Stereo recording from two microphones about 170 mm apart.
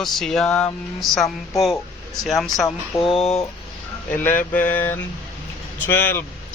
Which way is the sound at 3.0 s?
35° left (ahead or behind).